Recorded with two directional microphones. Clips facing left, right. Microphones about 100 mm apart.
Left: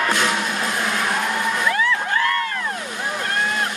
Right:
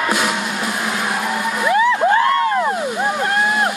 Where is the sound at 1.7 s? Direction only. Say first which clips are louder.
Right 12 dB; 25° right (ahead or behind).